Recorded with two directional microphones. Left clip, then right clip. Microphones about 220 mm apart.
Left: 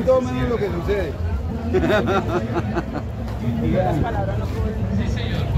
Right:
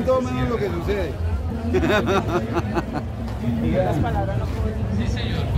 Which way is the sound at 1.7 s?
50° right (ahead or behind).